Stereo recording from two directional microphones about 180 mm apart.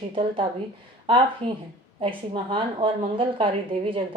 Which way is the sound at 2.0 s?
30° right (ahead or behind).